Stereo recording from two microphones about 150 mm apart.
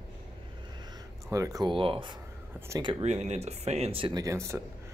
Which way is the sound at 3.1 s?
50° right (ahead or behind).